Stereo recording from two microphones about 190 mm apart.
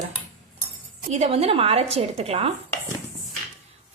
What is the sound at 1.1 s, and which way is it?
A woman's voice, 35° right (ahead or behind).